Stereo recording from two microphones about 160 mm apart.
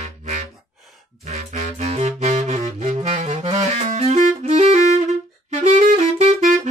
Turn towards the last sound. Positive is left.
turn(degrees=-45)  # may be behind; listen again after turning